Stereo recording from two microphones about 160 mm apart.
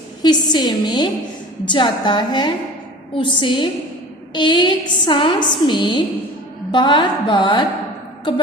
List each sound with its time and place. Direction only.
0.2 s a woman's voice: 25° left (ahead or behind)